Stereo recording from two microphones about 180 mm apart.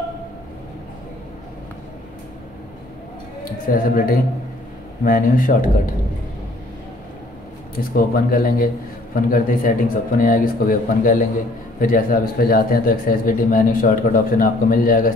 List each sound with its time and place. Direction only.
3.6 s a man's voice: 50° left (ahead or behind)
7.7 s a man's voice: 55° left (ahead or behind)